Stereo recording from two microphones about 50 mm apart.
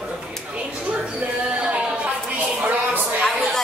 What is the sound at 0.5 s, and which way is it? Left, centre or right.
Speech, right.